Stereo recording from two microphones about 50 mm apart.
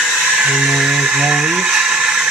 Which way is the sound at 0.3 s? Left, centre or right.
Centre.